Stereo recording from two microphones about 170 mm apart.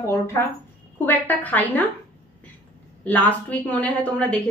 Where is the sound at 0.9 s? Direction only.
10° left (ahead or behind).